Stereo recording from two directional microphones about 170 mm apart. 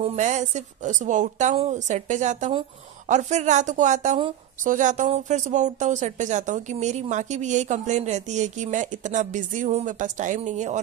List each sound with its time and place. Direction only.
0.0 s speech: 45° right (ahead or behind)